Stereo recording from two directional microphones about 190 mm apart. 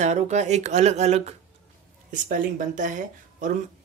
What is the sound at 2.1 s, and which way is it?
Speech, 45° right (ahead or behind).